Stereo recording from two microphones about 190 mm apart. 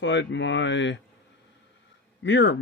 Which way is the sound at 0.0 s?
70° left (ahead or behind).